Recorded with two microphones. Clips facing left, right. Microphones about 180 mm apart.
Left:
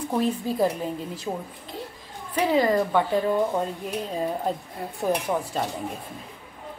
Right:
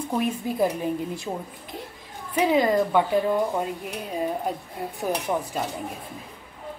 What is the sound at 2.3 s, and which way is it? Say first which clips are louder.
Speech: right 1 dB; 15° right (ahead or behind).